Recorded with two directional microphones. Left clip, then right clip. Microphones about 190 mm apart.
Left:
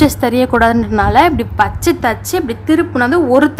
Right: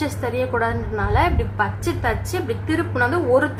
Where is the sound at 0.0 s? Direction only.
60° left (ahead or behind).